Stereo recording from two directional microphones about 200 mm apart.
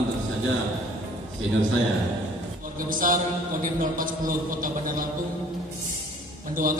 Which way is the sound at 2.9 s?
40° right (ahead or behind).